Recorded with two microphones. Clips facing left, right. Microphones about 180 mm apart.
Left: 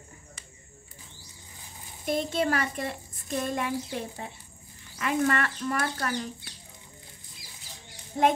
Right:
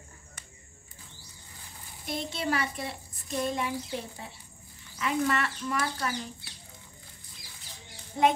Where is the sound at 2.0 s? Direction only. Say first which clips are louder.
Left 5 dB; 50° left (ahead or behind).